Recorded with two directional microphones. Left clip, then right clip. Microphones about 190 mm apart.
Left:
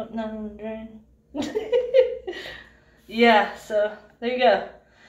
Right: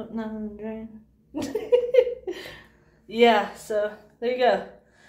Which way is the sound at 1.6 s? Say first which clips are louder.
Even; 15° right (ahead or behind).